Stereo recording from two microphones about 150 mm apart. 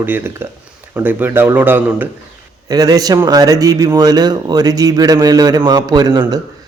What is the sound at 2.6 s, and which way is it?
Speech, 25° right (ahead or behind).